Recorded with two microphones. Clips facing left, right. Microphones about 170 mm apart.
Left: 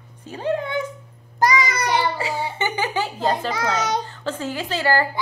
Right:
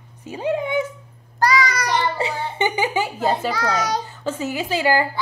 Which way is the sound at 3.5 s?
25° left (ahead or behind).